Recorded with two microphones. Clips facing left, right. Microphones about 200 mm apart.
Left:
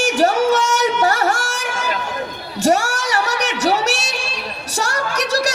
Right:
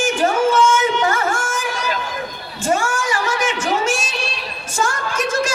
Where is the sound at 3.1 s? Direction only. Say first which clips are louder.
Even; 70° left (ahead or behind).